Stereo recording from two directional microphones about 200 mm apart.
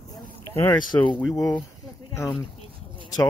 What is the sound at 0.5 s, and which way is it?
Speech, 20° left (ahead or behind).